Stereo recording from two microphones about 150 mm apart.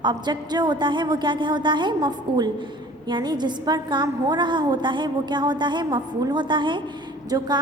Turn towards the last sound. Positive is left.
turn(degrees=-30)  # may be behind; listen again after turning